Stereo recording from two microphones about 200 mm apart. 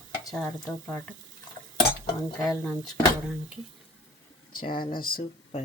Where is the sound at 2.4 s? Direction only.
Centre (ahead or behind).